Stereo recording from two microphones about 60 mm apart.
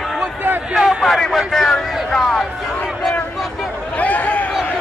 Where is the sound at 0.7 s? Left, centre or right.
Centre.